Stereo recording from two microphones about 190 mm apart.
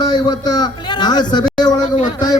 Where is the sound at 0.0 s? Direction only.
20° left (ahead or behind).